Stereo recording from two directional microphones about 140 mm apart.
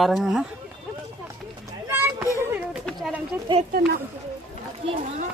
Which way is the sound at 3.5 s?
35° right (ahead or behind).